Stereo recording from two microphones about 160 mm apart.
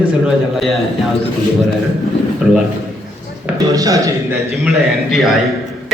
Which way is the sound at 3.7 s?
20° right (ahead or behind).